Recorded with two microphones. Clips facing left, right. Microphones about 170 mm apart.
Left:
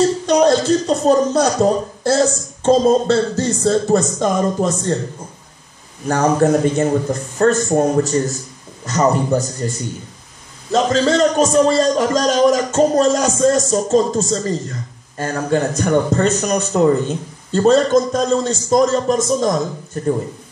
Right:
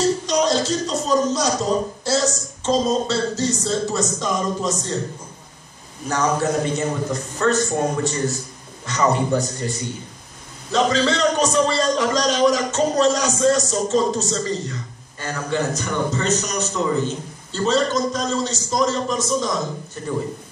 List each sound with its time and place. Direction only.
0.3 s a man's voice: 55° left (ahead or behind)
6.0 s a man's voice: 55° left (ahead or behind)